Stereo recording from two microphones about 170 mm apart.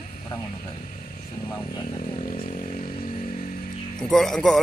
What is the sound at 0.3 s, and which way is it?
Speech, 25° left (ahead or behind).